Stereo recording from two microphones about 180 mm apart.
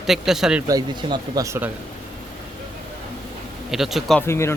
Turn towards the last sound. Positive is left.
turn(degrees=15)  # may be behind; listen again after turning